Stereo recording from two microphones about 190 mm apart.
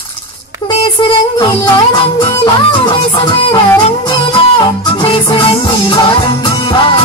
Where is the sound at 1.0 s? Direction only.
25° left (ahead or behind).